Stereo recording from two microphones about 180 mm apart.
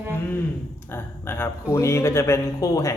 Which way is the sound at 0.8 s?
10° left (ahead or behind).